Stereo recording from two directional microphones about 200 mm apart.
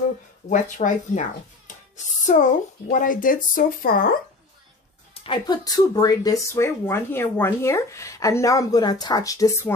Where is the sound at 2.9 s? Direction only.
40° left (ahead or behind).